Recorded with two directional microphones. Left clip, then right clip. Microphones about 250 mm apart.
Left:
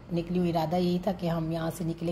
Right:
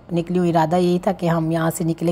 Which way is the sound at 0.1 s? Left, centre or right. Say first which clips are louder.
Right 10 dB; right.